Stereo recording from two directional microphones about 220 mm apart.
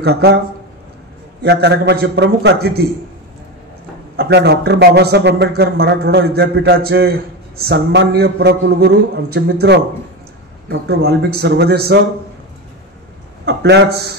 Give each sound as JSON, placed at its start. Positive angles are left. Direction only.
{"t": 0.0, "sound": "speech", "side_deg": -50}
{"t": 1.4, "sound": "speech", "side_deg": -50}
{"t": 4.2, "sound": "speech", "side_deg": -50}
{"t": 13.5, "sound": "speech", "side_deg": -50}